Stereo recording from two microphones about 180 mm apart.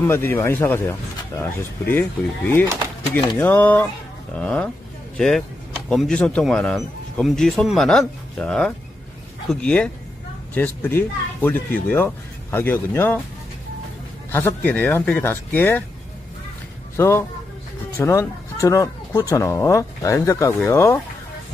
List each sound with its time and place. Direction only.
0.0 s speech: 15° left (ahead or behind)
14.3 s speech: 10° left (ahead or behind)
16.9 s speech: 15° left (ahead or behind)